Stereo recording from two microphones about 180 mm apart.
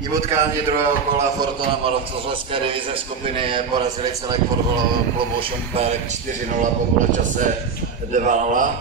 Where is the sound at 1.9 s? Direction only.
30° right (ahead or behind).